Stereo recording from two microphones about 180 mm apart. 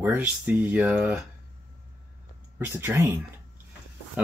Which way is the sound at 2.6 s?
10° right (ahead or behind).